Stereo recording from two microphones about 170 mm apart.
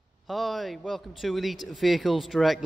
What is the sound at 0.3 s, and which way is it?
Speech, centre (ahead or behind).